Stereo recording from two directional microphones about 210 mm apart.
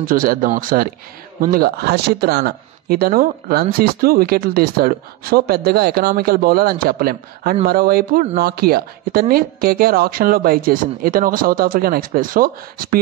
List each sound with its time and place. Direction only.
0.0 s speech: 40° right (ahead or behind)